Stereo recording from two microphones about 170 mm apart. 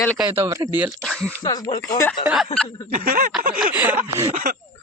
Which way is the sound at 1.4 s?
25° left (ahead or behind).